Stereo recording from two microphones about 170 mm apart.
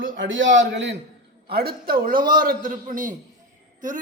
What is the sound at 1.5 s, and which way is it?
A man's voice, 65° right (ahead or behind).